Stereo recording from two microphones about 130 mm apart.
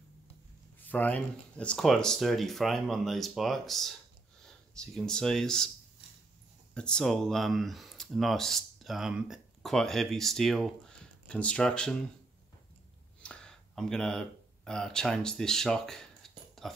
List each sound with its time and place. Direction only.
0.7 s speech: 15° left (ahead or behind)
6.7 s speech: 5° left (ahead or behind)
13.2 s a sound: 5° left (ahead or behind)